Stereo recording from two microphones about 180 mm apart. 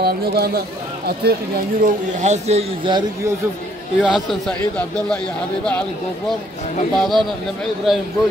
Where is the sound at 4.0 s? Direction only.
Centre (ahead or behind).